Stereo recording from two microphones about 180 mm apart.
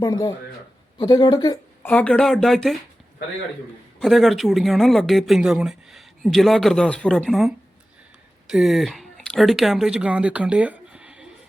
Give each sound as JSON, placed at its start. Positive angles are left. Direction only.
{"t": 0.0, "sound": "a man's voice", "side_deg": 20}
{"t": 1.9, "sound": "speech", "side_deg": 5}
{"t": 4.0, "sound": "speech", "side_deg": 0}